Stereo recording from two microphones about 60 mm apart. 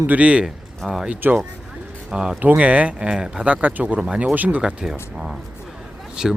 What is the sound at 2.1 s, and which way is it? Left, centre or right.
Speech, centre.